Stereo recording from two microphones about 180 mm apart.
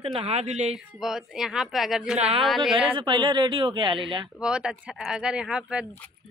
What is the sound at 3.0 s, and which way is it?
Speech, 25° right (ahead or behind).